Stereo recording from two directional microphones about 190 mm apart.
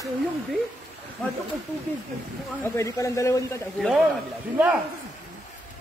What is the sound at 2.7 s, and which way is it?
Speech, 15° left (ahead or behind).